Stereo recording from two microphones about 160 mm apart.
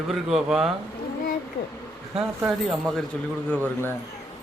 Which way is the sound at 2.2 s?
Centre (ahead or behind).